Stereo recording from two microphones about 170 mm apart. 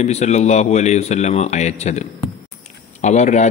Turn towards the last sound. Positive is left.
turn(degrees=45)  # may be behind; listen again after turning